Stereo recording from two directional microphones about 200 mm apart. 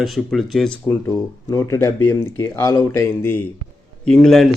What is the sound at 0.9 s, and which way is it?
Speech, 15° left (ahead or behind).